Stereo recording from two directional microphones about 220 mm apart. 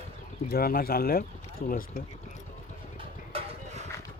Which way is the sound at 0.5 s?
45° left (ahead or behind).